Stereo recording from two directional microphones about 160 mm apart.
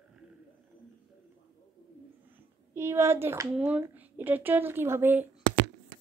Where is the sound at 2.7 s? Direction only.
15° right (ahead or behind).